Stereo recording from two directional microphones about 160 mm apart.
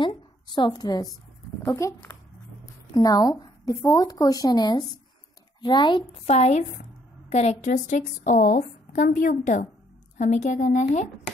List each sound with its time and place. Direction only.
0.0 s a sound: 30° left (ahead or behind)
1.6 s a child's voice: 15° left (ahead or behind)
6.2 s a woman's voice: 45° left (ahead or behind)